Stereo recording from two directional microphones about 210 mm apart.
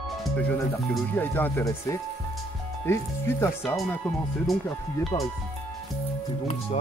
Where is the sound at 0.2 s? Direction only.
5° left (ahead or behind).